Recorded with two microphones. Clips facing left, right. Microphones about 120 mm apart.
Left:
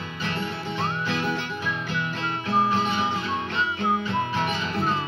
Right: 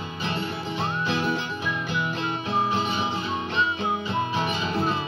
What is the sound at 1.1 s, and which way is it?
Music, 15° right (ahead or behind).